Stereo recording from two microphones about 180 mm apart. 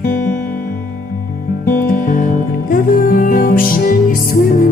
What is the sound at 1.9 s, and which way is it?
Music, 45° left (ahead or behind).